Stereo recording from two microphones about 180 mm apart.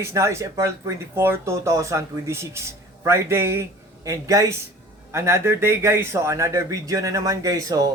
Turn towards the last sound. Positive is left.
turn(degrees=-20)  # may be behind; listen again after turning